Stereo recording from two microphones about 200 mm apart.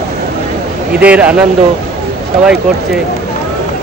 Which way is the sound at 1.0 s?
5° right (ahead or behind).